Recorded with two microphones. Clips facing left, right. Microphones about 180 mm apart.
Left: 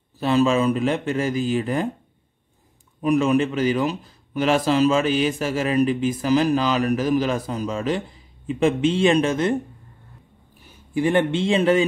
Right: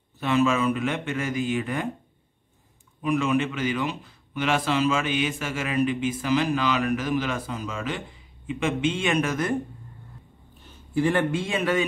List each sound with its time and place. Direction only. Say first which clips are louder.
0.2 s a man's voice: left 4 dB; 35° left (ahead or behind)
3.0 s a man's voice: left 5 dB; 40° left (ahead or behind)
10.6 s a sound: left 1 dB; 10° left (ahead or behind)
11.1 s a man's voice: left 7 dB; 25° left (ahead or behind)